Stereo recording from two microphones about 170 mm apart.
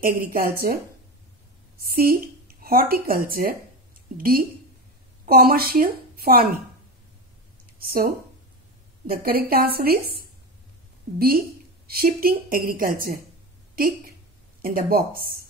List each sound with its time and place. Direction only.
0.0 s a woman's voice: 55° right (ahead or behind)
1.8 s a woman's voice: 60° right (ahead or behind)
7.8 s speech: 60° right (ahead or behind)
9.1 s a woman's voice: 60° right (ahead or behind)